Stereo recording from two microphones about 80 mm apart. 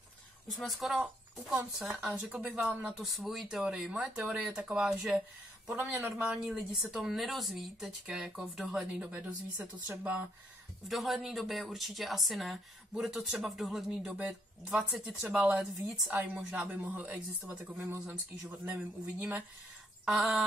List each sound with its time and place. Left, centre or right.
0.5 s speech: centre
2.1 s a man's voice: centre
3.0 s speech: centre
5.7 s a man's voice: right
6.2 s speech: centre
9.0 s a man's voice: centre
10.9 s speech: centre
15.6 s a man's voice: centre; by 19.4 s right
20.1 s speech: centre